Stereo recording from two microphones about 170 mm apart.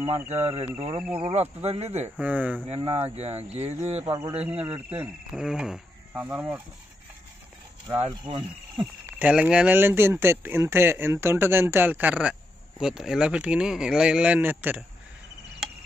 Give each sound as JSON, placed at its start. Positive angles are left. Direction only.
{"t": 0.0, "sound": "speech", "side_deg": -15}
{"t": 0.4, "sound": "speech", "side_deg": -40}
{"t": 1.0, "sound": "speech", "side_deg": -5}
{"t": 1.3, "sound": "speech", "side_deg": -40}
{"t": 2.1, "sound": "speech", "side_deg": -10}
{"t": 2.7, "sound": "speech", "side_deg": -35}
{"t": 4.0, "sound": "speech", "side_deg": -15}
{"t": 8.1, "sound": "speech", "side_deg": -30}
{"t": 9.0, "sound": "speech", "side_deg": -10}